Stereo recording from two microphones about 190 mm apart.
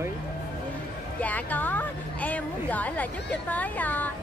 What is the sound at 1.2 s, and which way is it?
A woman's voice, 10° left (ahead or behind).